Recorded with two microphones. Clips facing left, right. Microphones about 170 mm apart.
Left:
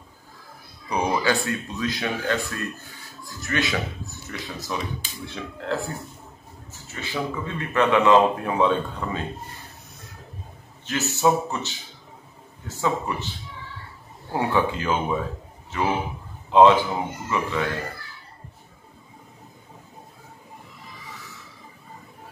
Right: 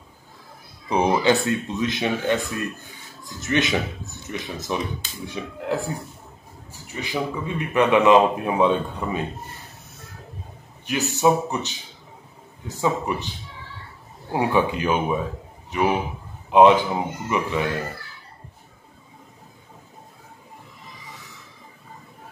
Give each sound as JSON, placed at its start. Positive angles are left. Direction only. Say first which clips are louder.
{"t": 0.8, "sound": "a man's voice", "louder": "right 4 dB", "side_deg": -25}
{"t": 10.9, "sound": "a man's voice", "louder": "right 2 dB", "side_deg": -15}
{"t": 14.3, "sound": "a man's voice", "louder": "right 2 dB", "side_deg": -15}